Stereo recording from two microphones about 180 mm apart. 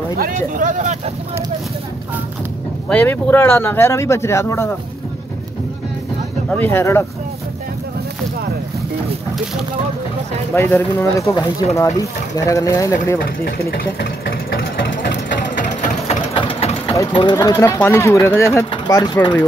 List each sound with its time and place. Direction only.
0.2 s speech: 45° right (ahead or behind)
2.9 s speech: 10° left (ahead or behind)
6.5 s speech: 10° left (ahead or behind)
10.5 s speech: 10° left (ahead or behind)
13.7 s speech: 55° left (ahead or behind)
15.8 s engine: 30° left (ahead or behind)
16.9 s speech: 20° left (ahead or behind)